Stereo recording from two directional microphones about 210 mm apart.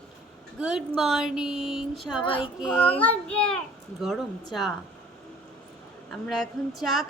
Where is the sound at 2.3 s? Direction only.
25° left (ahead or behind).